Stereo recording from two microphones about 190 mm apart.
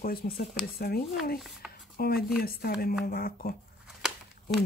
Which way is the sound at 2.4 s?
55° left (ahead or behind).